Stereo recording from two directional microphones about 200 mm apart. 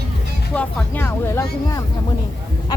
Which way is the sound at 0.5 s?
5° left (ahead or behind).